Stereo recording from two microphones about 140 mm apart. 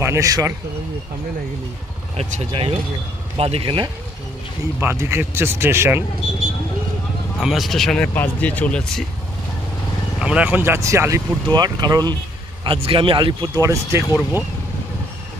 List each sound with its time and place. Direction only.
0.0 s speech: 20° right (ahead or behind)
2.1 s speech: 45° right (ahead or behind)
4.7 s speech: 15° right (ahead or behind)
7.3 s speech: centre (ahead or behind)
10.1 s speech: 5° right (ahead or behind); by 12.2 s 30° right (ahead or behind)
12.6 s speech: 40° right (ahead or behind)
13.6 s speech: 20° right (ahead or behind)